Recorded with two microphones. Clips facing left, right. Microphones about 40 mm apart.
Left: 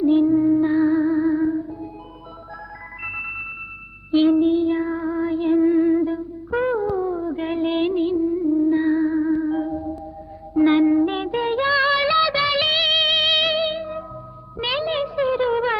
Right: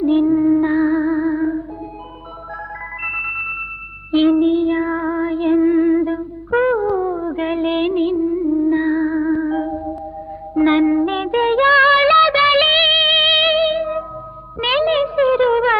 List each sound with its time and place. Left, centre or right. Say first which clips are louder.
0.0 s female singing: right 2 dB; right
0.9 s music: right 1 dB; right
3.0 s music: right 6 dB; right
4.4 s female singing: right 3 dB; right
5.6 s humming: right 2 dB; right
6.0 s music: right 3 dB; right
6.7 s music: right 4 dB; centre
8.1 s music: right 2 dB; centre
14.6 s a sound: right 7 dB; right